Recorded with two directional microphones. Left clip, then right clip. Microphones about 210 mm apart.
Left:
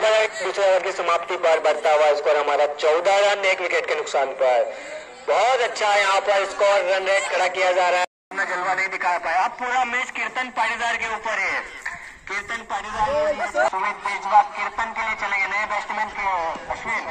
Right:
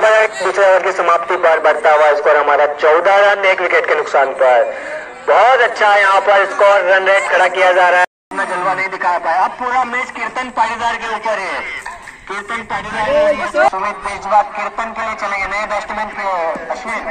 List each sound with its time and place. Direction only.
0.0 s a sound: 25° right (ahead or behind)
0.5 s a man's voice: 25° right (ahead or behind)
8.4 s speech: 30° left (ahead or behind)
12.7 s speech: 25° left (ahead or behind)
13.7 s a man's voice: 50° right (ahead or behind)